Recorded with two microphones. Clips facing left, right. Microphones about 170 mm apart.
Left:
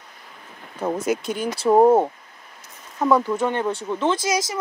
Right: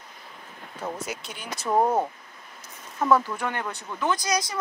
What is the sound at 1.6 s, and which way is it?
Speech, 25° left (ahead or behind).